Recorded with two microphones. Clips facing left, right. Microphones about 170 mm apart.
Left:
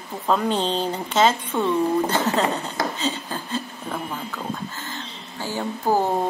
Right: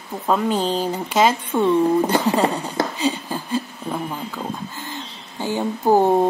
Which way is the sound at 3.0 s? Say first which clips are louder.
Right 4 dB; 15° right (ahead or behind).